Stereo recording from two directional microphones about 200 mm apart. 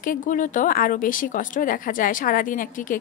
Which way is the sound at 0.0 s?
40° left (ahead or behind).